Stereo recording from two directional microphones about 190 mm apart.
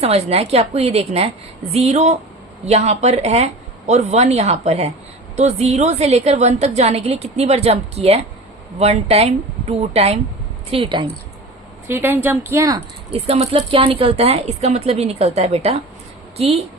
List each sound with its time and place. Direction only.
0.0 s a woman's voice: 35° right (ahead or behind)
11.9 s a woman's voice: 10° right (ahead or behind)
13.1 s a woman's voice: 30° right (ahead or behind)